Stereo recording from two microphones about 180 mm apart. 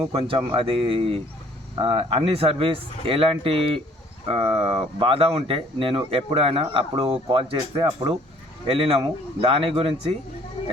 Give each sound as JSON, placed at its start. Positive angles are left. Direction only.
{"t": 0.1, "sound": "speech", "side_deg": -30}